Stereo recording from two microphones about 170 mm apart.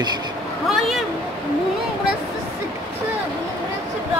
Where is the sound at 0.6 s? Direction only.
Centre (ahead or behind).